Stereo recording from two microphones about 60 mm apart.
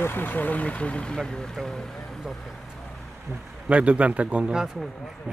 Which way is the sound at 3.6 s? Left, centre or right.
Right.